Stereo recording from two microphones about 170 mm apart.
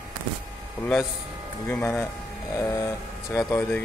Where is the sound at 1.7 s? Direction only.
10° left (ahead or behind).